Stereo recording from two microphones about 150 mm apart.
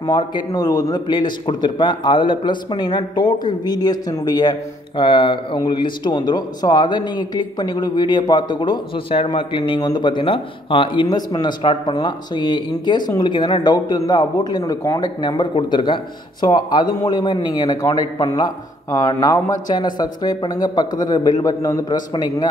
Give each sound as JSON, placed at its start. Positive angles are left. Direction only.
{"t": 0.0, "sound": "speech", "side_deg": 30}